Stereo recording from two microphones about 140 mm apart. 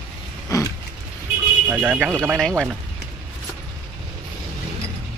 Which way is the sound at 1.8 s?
5° right (ahead or behind).